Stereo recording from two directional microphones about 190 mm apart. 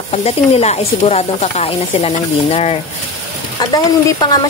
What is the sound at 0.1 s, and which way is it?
Speech, 35° left (ahead or behind).